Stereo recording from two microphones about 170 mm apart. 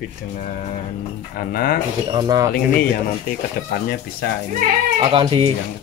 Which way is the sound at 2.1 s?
20° right (ahead or behind).